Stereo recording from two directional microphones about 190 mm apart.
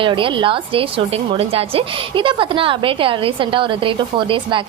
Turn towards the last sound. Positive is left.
turn(degrees=-25)  # may be behind; listen again after turning